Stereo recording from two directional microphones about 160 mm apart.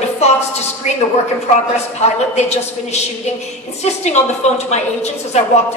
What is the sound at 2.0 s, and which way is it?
A man's voice, 40° left (ahead or behind).